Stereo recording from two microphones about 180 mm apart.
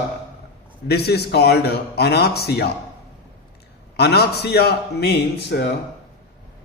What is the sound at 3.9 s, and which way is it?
A man's voice, 65° left (ahead or behind).